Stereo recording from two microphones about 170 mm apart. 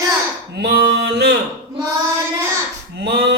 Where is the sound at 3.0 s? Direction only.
70° right (ahead or behind).